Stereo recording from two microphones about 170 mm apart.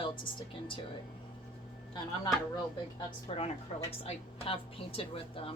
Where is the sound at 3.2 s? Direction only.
35° left (ahead or behind).